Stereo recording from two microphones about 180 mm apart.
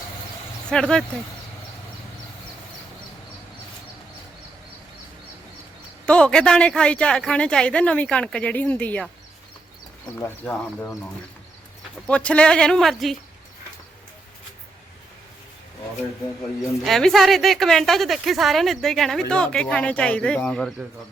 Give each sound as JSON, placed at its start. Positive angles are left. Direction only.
{"t": 0.7, "sound": "a woman's voice", "side_deg": 5}
{"t": 6.1, "sound": "a woman's voice", "side_deg": 5}
{"t": 10.2, "sound": "speech", "side_deg": 10}
{"t": 12.0, "sound": "a woman's voice", "side_deg": 5}
{"t": 16.8, "sound": "a woman's voice", "side_deg": 0}